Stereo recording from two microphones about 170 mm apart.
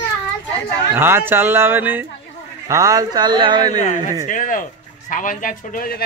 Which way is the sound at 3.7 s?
45° left (ahead or behind).